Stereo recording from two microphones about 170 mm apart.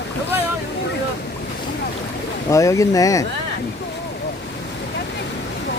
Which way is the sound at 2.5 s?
20° left (ahead or behind).